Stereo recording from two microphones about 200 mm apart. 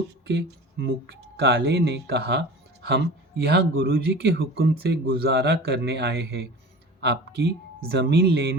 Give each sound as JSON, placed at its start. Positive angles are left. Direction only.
{"t": 0.3, "sound": "speech", "side_deg": -60}